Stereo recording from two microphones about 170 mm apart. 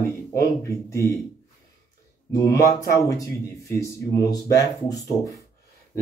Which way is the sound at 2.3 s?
20° left (ahead or behind).